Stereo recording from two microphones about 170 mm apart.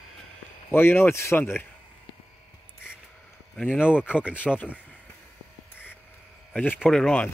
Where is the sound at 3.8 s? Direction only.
5° right (ahead or behind).